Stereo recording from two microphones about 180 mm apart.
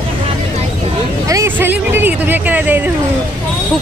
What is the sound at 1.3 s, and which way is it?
Speech, 15° right (ahead or behind).